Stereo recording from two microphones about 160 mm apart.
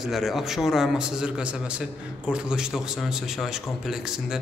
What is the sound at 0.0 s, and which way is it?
A man's voice, centre (ahead or behind).